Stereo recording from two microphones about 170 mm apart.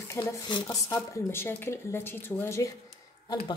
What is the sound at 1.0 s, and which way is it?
Speech, 15° left (ahead or behind).